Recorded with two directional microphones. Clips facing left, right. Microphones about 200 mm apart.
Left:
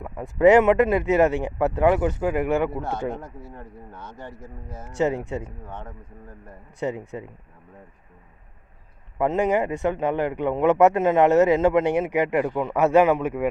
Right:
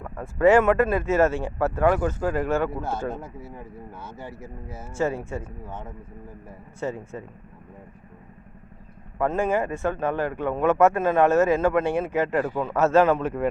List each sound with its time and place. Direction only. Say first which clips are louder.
0.0 s speech: left 2 dB; 15° left (ahead or behind)
2.6 s a man's voice: left 1 dB; centre (ahead or behind)
4.9 s speech: left 3 dB; 20° left (ahead or behind)
5.6 s speech: right 1 dB; 5° right (ahead or behind)
6.7 s speech: left 2 dB; 15° left (ahead or behind)
9.1 s speech: left 2 dB; 20° left (ahead or behind)